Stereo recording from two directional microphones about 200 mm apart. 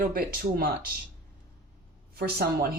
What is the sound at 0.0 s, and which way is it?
Speech, 45° right (ahead or behind).